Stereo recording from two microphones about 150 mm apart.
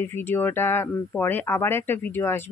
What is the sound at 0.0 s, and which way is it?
Speech, 15° left (ahead or behind).